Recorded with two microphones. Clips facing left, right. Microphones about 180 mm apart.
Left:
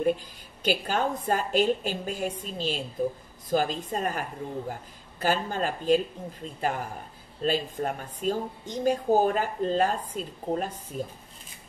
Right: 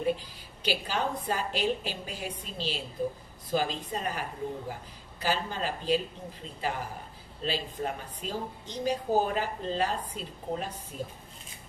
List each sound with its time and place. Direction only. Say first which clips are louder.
0.6 s speech: left 4 dB; 50° left (ahead or behind)